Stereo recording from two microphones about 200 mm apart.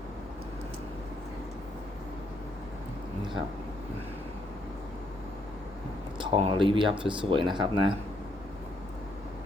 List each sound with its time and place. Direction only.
6.1 s speech: 25° right (ahead or behind)